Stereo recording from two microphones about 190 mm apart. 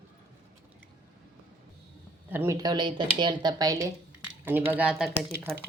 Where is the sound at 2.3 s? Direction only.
15° right (ahead or behind).